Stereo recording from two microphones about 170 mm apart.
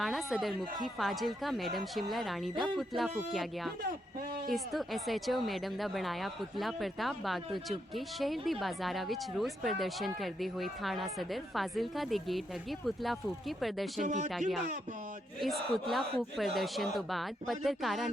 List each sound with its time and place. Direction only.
0.0 s speech: centre (ahead or behind)
14.0 s speech: 45° right (ahead or behind)
15.4 s speech: centre (ahead or behind)